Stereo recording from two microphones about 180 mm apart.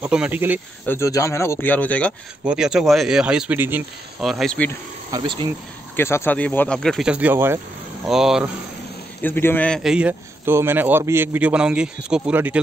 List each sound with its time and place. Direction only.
0.0 s a man's voice: 5° right (ahead or behind)
0.8 s speech: 15° left (ahead or behind)
2.4 s speech: 5° right (ahead or behind)
4.2 s speech: centre (ahead or behind)
5.1 s speech: 25° right (ahead or behind)
5.9 s speech: 15° left (ahead or behind); by 7.6 s 15° right (ahead or behind)
8.1 s speech: centre (ahead or behind)
9.2 s a man's voice: 10° left (ahead or behind); by 12.5 s 10° right (ahead or behind)